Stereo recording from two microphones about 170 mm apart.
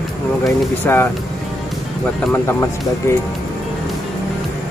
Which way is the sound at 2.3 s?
15° left (ahead or behind).